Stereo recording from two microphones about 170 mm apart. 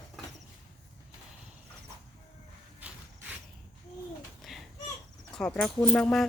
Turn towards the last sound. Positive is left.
turn(degrees=5)  # may be behind; listen again after turning